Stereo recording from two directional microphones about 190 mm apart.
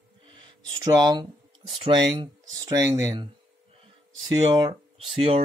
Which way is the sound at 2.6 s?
20° right (ahead or behind).